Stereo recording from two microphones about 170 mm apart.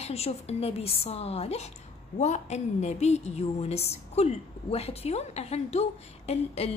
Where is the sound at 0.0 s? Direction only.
40° left (ahead or behind).